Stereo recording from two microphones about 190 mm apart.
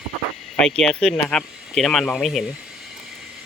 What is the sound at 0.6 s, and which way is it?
Speech, 5° left (ahead or behind).